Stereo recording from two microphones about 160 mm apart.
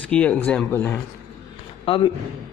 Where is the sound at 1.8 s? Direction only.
30° left (ahead or behind).